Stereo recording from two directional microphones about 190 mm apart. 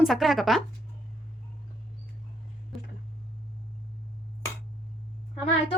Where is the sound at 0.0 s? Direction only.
Centre (ahead or behind).